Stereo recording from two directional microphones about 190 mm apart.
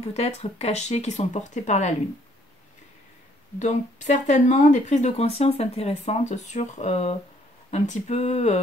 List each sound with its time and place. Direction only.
0.0 s speech: 35° left (ahead or behind)
3.5 s speech: 40° left (ahead or behind)